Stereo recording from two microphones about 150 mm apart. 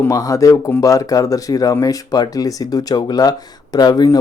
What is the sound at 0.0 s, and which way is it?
Speech, 20° left (ahead or behind).